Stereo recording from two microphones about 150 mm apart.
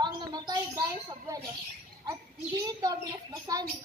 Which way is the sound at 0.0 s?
30° right (ahead or behind).